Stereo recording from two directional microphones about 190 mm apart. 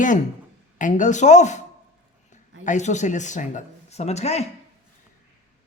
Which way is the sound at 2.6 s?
40° left (ahead or behind).